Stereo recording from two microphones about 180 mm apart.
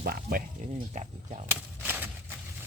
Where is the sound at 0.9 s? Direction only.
40° right (ahead or behind).